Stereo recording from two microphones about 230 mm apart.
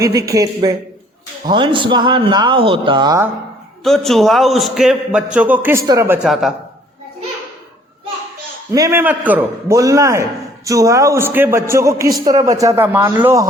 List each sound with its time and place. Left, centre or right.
0.0 s a man's voice: centre
3.8 s a man's voice: centre
6.2 s a man's voice: centre
8.7 s a man's voice: centre